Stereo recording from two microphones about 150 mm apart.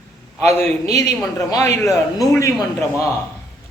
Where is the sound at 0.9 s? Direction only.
45° right (ahead or behind).